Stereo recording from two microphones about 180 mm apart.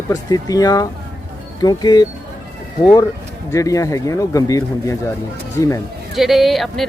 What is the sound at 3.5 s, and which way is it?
Speech, 20° left (ahead or behind).